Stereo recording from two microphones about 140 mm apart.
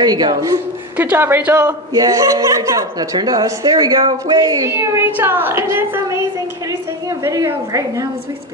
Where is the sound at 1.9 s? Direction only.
25° right (ahead or behind).